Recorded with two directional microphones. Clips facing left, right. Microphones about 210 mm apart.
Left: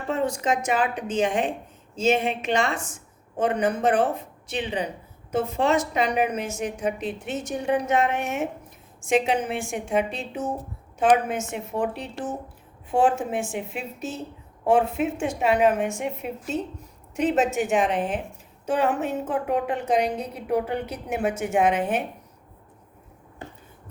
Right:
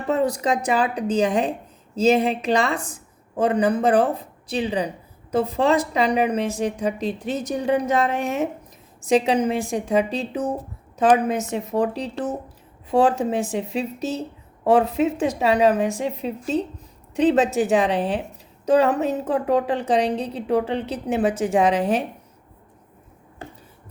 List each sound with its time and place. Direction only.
0.1 s a woman's voice: 35° right (ahead or behind)